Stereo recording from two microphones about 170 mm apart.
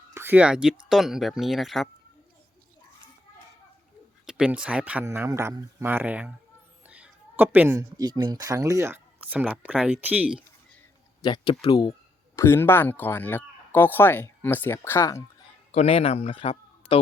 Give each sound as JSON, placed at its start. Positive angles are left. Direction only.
{"t": 0.1, "sound": "speech", "side_deg": -15}
{"t": 4.3, "sound": "speech", "side_deg": -5}
{"t": 11.2, "sound": "speech", "side_deg": 30}
{"t": 15.7, "sound": "speech", "side_deg": 40}